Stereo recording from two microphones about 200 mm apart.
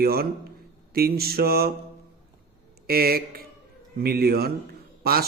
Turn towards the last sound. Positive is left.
turn(degrees=-50)  # may be behind; listen again after turning